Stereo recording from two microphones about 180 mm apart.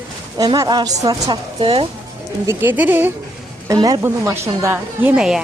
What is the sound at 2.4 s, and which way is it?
A woman's voice, 10° right (ahead or behind).